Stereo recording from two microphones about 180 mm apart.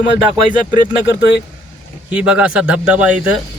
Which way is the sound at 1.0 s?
70° left (ahead or behind).